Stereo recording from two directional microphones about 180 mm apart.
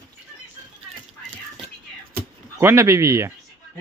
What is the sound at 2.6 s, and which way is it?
Speech, 15° right (ahead or behind).